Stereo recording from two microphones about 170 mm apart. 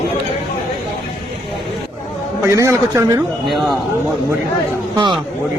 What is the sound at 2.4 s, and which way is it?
Speech, 15° right (ahead or behind).